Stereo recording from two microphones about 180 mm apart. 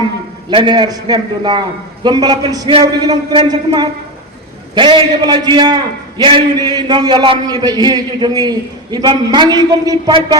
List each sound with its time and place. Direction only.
0.5 s a man's voice: 25° right (ahead or behind)